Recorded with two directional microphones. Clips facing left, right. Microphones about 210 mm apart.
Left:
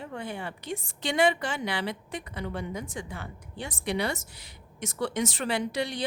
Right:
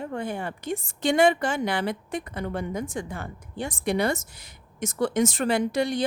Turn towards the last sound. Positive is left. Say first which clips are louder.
# right 6 dB
turn(degrees=-45)  # may be behind; listen again after turning